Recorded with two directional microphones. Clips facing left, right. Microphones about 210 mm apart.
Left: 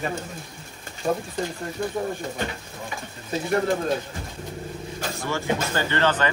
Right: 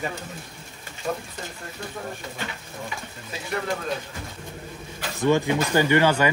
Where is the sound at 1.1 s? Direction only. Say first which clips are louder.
Left 4 dB; 30° left (ahead or behind).